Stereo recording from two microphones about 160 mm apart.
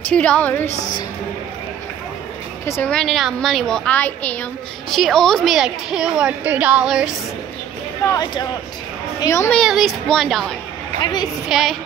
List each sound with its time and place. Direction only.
0.1 s a woman's voice: 10° left (ahead or behind)
2.6 s a woman's voice: 15° left (ahead or behind)
2.9 s a woman's voice: 5° left (ahead or behind)
8.0 s a woman's voice: 25° left (ahead or behind)
9.5 s a woman's voice: centre (ahead or behind)
11.0 s speech: 25° left (ahead or behind)
11.4 s a woman's voice: centre (ahead or behind)